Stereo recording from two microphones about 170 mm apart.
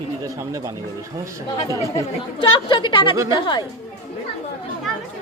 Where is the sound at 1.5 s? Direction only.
20° left (ahead or behind).